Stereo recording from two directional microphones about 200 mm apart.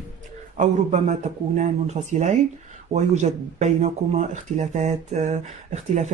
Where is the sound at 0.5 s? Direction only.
35° right (ahead or behind).